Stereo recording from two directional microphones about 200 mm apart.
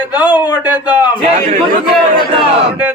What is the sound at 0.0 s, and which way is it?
Speech, 10° right (ahead or behind).